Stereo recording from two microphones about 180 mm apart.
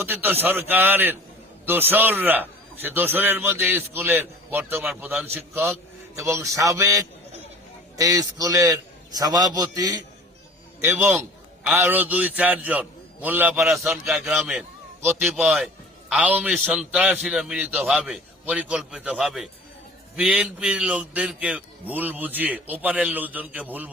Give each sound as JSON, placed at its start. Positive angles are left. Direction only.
{"t": 0.0, "sound": "a man's voice", "side_deg": -10}